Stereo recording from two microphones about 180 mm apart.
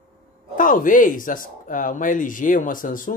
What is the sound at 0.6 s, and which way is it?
Speech, 50° left (ahead or behind).